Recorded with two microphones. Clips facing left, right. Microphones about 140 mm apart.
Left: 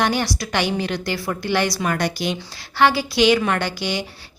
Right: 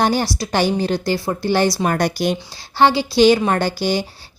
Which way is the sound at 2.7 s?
30° right (ahead or behind).